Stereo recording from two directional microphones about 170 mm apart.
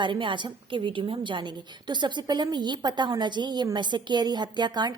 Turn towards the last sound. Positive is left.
turn(degrees=-25)  # may be behind; listen again after turning